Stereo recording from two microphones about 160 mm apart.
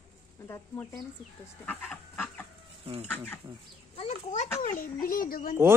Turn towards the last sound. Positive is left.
turn(degrees=65)  # may be behind; listen again after turning